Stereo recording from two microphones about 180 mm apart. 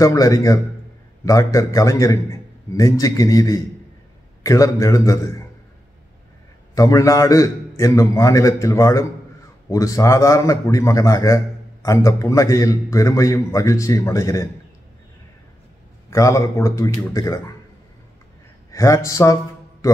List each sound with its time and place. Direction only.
0.0 s a man's voice: 20° left (ahead or behind)
6.7 s a man's voice: 20° left (ahead or behind)
16.1 s a man's voice: 15° left (ahead or behind)
18.7 s a man's voice: 15° left (ahead or behind)